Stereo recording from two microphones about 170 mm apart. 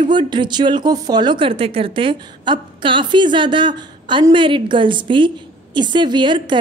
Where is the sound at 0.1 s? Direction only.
25° right (ahead or behind).